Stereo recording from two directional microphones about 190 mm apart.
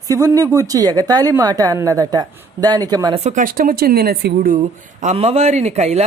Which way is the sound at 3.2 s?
40° right (ahead or behind).